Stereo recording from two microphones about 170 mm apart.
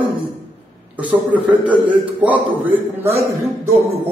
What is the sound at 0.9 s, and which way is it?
A man's voice, 10° right (ahead or behind).